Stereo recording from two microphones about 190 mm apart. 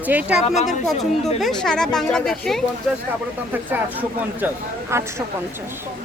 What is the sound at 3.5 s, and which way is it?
A woman's voice, 10° right (ahead or behind).